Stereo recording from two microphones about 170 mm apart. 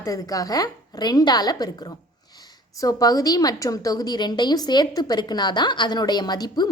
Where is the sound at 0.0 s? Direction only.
20° left (ahead or behind).